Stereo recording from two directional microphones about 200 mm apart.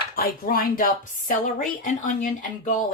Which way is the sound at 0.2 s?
45° left (ahead or behind).